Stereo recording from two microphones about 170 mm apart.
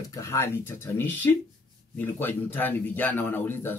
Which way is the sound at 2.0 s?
10° left (ahead or behind).